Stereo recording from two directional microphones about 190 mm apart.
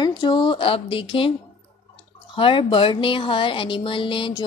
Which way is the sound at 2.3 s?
25° left (ahead or behind).